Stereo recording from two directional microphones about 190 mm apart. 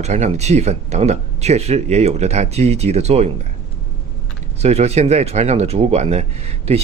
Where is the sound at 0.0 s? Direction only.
35° right (ahead or behind).